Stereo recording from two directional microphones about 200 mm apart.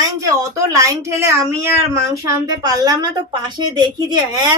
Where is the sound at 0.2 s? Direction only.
15° right (ahead or behind).